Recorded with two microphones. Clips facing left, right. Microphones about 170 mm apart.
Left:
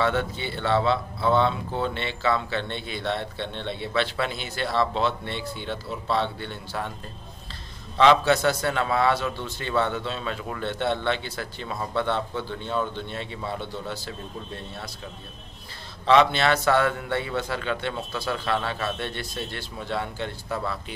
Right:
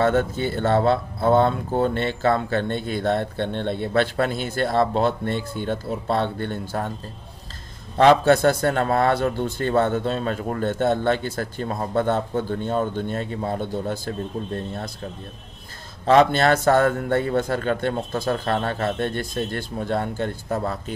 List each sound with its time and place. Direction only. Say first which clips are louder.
0.0 s speech: right 5 dB; 45° right (ahead or behind)
8.0 s speech: right 4 dB; 50° right (ahead or behind)
16.1 s speech: right 3 dB; 45° right (ahead or behind)